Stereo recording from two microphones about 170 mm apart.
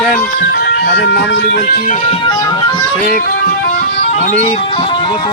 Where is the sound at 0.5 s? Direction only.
70° left (ahead or behind); by 2.0 s 55° left (ahead or behind).